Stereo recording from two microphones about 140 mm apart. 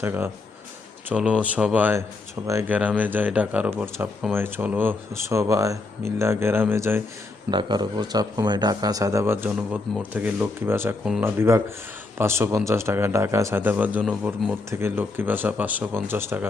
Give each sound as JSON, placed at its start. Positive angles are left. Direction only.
{"t": 0.0, "sound": "speech", "side_deg": -15}
{"t": 7.5, "sound": "speech", "side_deg": -35}
{"t": 14.7, "sound": "speech", "side_deg": -15}